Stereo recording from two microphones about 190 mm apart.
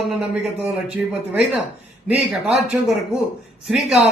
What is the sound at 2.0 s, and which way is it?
Speech, 5° right (ahead or behind).